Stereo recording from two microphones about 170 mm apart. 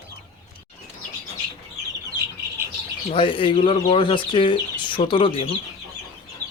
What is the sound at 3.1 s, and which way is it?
Speech, 30° left (ahead or behind).